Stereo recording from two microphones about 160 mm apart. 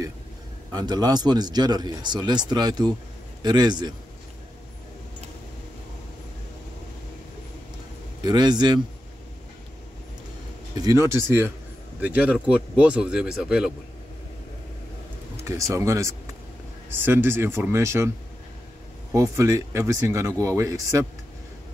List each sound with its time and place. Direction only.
0.7 s a man's voice: 25° right (ahead or behind)
8.2 s a man's voice: 25° right (ahead or behind)
10.8 s speech: 20° right (ahead or behind)
15.4 s a man's voice: 20° right (ahead or behind)
19.1 s a man's voice: 20° right (ahead or behind)